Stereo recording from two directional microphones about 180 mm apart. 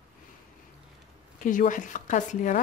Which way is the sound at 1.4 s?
45° left (ahead or behind).